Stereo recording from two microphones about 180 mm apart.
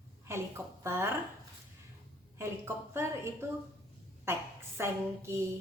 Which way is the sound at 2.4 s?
15° right (ahead or behind).